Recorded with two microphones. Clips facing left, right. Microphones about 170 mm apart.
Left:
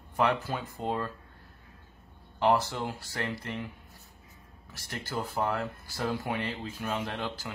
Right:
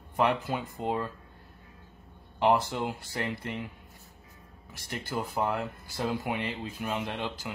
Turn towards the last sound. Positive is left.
turn(degrees=-10)  # may be behind; listen again after turning